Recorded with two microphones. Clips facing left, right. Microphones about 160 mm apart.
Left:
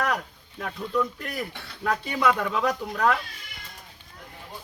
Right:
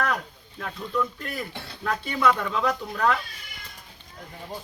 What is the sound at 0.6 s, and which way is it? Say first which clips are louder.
Music: left 1 dB; 15° left (ahead or behind).